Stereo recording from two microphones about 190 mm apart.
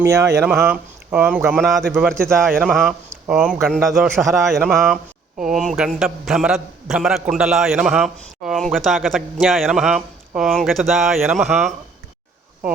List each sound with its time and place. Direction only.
0.0 s a man's voice: 15° right (ahead or behind); by 11.7 s centre (ahead or behind)